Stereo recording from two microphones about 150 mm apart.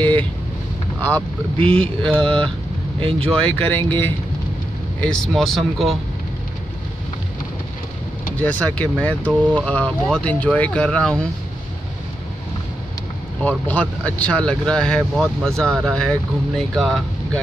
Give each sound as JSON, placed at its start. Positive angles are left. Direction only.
{"t": 0.0, "sound": "vehicle", "side_deg": 10}
{"t": 1.0, "sound": "speech", "side_deg": 10}
{"t": 3.0, "sound": "speech", "side_deg": -40}
{"t": 3.3, "sound": "speech", "side_deg": 5}
{"t": 5.0, "sound": "speech", "side_deg": 5}
{"t": 8.4, "sound": "speech", "side_deg": 10}
{"t": 13.4, "sound": "speech", "side_deg": 10}